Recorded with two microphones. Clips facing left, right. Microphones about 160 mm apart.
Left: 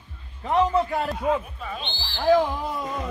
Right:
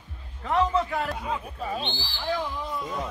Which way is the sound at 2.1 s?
55° left (ahead or behind).